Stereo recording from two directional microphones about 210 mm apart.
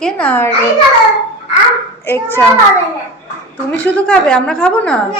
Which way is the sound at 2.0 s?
10° left (ahead or behind).